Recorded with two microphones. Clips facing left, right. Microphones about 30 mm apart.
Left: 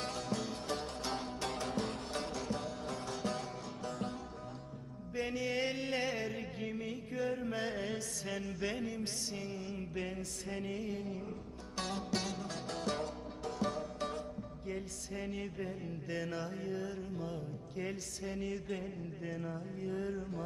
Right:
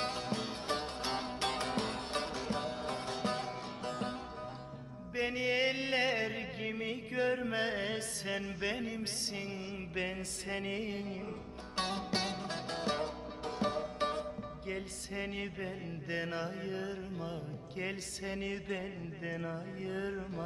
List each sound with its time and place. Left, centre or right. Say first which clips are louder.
0.0 s music: right 2 dB; right
1.5 s music: right 2 dB; right
2.2 s music: right 1 dB; right
2.6 s music: right 3 dB; right
3.9 s music: right 2 dB; right
5.1 s music: right 3 dB; right
7.4 s music: right 3 dB; right
8.3 s music: right 2 dB; right
10.0 s music: right 6 dB; right
11.8 s music: right 2 dB; right
15.5 s music: even; right
19.2 s music: right 3 dB; right
19.8 s music: even; right